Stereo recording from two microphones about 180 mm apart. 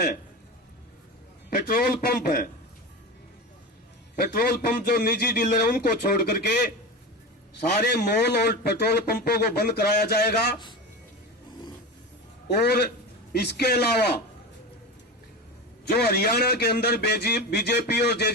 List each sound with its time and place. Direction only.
1.5 s a man's voice: 55° left (ahead or behind)
4.2 s a man's voice: 55° left (ahead or behind)
7.8 s a man's voice: 65° left (ahead or behind)
12.5 s a man's voice: 65° left (ahead or behind)
16.0 s a man's voice: 60° left (ahead or behind)